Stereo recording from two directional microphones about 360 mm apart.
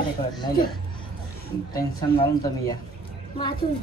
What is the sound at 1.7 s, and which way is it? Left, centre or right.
Speech, centre.